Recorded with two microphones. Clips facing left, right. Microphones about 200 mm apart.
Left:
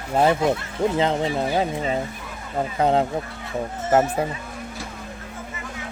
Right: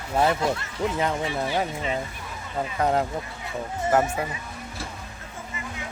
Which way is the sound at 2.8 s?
25° left (ahead or behind).